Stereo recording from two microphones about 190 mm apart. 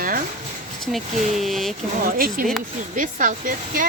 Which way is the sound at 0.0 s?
45° right (ahead or behind).